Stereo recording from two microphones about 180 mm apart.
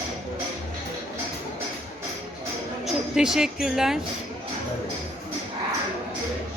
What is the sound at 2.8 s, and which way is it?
Speech, 5° right (ahead or behind).